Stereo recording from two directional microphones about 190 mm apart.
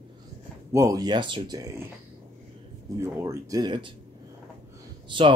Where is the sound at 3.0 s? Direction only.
15° right (ahead or behind).